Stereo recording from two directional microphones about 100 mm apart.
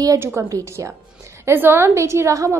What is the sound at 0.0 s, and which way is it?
A woman's voice, 30° right (ahead or behind).